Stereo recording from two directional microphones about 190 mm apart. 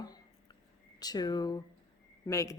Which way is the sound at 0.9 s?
20° left (ahead or behind).